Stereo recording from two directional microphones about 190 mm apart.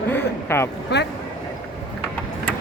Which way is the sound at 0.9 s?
65° left (ahead or behind).